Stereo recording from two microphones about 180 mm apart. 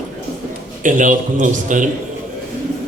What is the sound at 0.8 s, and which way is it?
A man's voice, 45° right (ahead or behind).